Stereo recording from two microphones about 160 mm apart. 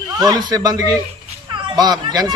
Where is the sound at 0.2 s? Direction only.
25° right (ahead or behind).